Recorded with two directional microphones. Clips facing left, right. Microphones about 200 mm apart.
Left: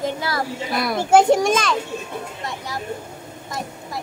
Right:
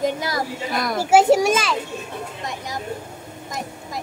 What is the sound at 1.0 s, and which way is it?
Speech, 5° right (ahead or behind).